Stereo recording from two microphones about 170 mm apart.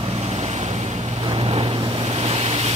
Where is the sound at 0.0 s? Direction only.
35° right (ahead or behind).